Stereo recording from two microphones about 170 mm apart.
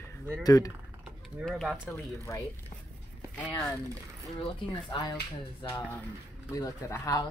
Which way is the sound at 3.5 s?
15° left (ahead or behind).